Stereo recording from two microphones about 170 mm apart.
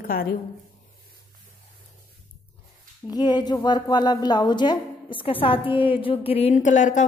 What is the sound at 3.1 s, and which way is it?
A woman's voice, 25° left (ahead or behind).